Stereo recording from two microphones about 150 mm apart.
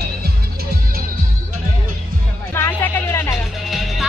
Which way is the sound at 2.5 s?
15° left (ahead or behind).